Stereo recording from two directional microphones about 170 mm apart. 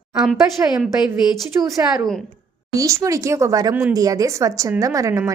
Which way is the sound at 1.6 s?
20° right (ahead or behind).